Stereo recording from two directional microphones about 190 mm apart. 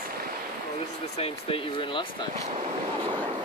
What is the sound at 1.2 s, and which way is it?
Speech, 30° left (ahead or behind).